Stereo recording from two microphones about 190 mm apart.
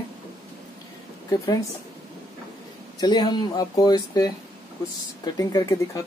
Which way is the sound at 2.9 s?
20° left (ahead or behind).